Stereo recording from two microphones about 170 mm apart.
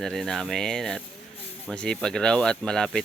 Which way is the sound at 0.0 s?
Centre (ahead or behind).